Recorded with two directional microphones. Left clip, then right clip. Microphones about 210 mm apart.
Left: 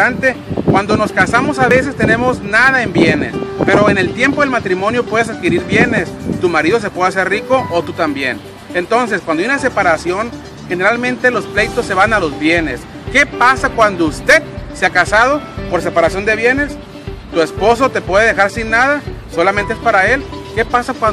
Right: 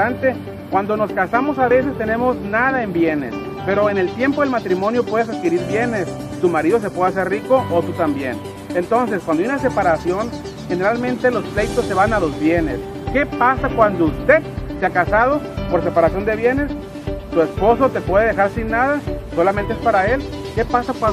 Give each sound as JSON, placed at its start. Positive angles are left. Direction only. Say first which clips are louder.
{"t": 0.0, "sound": "speech", "louder": "left 5 dB", "side_deg": 20}